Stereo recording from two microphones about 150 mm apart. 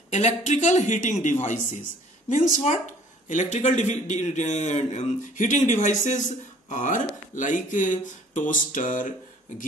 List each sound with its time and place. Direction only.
0.1 s a man's voice: 50° left (ahead or behind)